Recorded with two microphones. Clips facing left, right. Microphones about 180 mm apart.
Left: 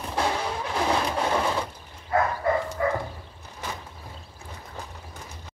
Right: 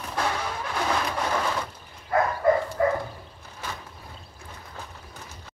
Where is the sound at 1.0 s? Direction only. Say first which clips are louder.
Left 2 dB; 25° left (ahead or behind).